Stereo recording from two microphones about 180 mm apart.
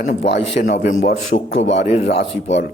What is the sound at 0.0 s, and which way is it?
A man's voice, 45° left (ahead or behind).